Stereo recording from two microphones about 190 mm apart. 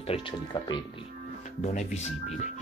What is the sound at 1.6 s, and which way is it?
Speech, 35° left (ahead or behind).